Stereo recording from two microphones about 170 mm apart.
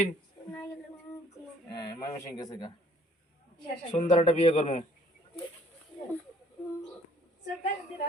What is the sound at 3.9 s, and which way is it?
Speech, 45° left (ahead or behind).